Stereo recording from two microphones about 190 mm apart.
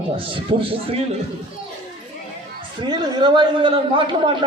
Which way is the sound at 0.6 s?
30° right (ahead or behind).